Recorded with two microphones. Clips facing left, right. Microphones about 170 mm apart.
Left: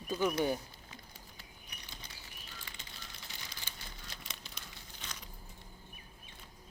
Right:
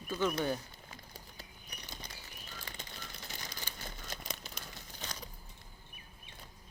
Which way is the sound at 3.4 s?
40° right (ahead or behind).